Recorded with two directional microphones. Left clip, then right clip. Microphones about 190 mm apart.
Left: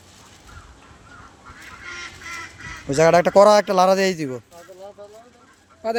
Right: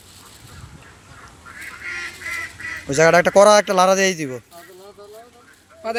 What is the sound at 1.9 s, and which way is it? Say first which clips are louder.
Duck: right 6 dB; 55° left (ahead or behind).